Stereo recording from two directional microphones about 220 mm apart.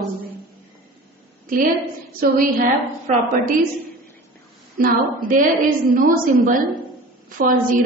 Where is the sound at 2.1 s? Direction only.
40° right (ahead or behind).